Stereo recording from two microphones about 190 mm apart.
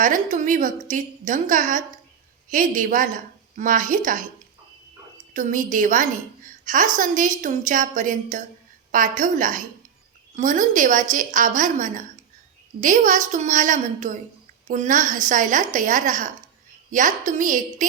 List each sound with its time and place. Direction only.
0.0 s a woman's voice: 45° right (ahead or behind)
5.3 s a woman's voice: 45° right (ahead or behind)